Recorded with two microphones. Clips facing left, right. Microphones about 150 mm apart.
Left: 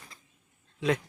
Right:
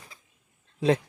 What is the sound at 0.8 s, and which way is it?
Speech, 30° right (ahead or behind).